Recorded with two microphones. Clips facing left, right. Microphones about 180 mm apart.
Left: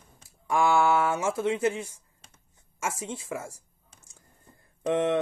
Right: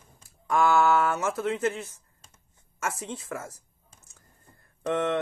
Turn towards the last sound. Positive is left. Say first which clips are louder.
# left 2 dB
turn(degrees=20)  # may be behind; listen again after turning